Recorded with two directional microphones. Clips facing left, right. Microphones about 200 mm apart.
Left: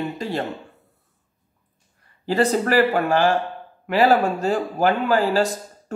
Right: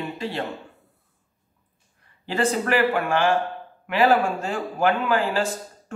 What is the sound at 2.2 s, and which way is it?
Speech, 40° left (ahead or behind).